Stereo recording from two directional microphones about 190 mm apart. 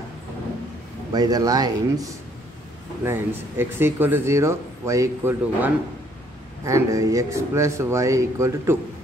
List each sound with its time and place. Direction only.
1.1 s speech: 20° right (ahead or behind)